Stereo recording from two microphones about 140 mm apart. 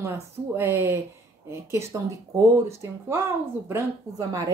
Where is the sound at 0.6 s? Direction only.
15° right (ahead or behind).